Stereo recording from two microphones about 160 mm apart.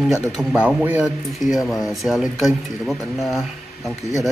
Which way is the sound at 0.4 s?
5° right (ahead or behind).